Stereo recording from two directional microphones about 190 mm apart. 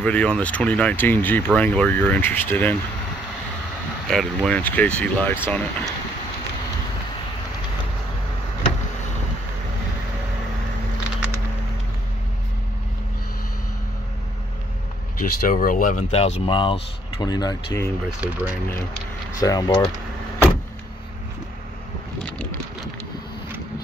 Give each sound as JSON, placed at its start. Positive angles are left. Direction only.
{"t": 0.0, "sound": "speech", "side_deg": 5}
{"t": 4.1, "sound": "speech", "side_deg": 0}
{"t": 15.1, "sound": "speech", "side_deg": 45}
{"t": 18.2, "sound": "speech", "side_deg": -10}
{"t": 19.4, "sound": "speech", "side_deg": 20}